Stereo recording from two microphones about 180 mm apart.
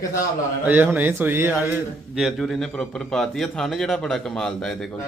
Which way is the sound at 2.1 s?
Centre (ahead or behind).